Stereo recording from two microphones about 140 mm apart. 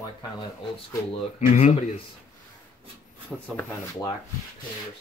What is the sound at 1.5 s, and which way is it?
Speech, 55° left (ahead or behind).